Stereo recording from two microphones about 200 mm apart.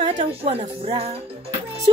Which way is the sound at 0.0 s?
30° right (ahead or behind).